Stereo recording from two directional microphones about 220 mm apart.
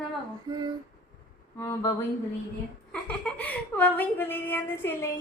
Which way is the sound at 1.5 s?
15° left (ahead or behind).